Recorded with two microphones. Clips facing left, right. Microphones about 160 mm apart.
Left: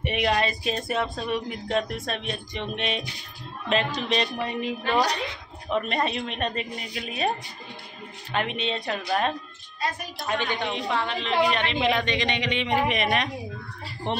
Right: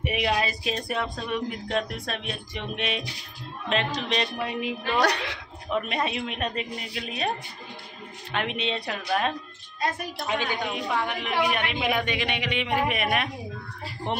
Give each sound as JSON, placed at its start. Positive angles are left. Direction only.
{"t": 0.0, "sound": "speech", "side_deg": -5}
{"t": 5.0, "sound": "speech", "side_deg": -70}
{"t": 5.7, "sound": "a woman's voice", "side_deg": 0}